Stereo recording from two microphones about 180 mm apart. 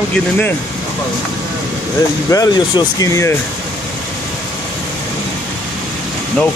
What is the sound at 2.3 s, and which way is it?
Speech, 20° left (ahead or behind).